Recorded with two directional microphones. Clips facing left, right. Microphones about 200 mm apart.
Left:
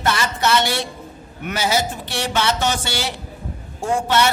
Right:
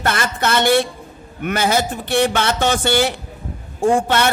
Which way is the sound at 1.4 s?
55° right (ahead or behind).